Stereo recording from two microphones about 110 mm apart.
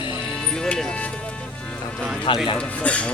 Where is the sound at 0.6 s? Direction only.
5° left (ahead or behind).